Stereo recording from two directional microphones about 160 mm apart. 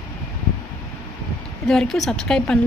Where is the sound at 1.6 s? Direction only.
Centre (ahead or behind).